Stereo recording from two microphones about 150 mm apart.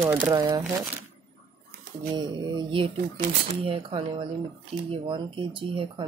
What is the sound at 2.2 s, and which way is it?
Speech, 30° right (ahead or behind).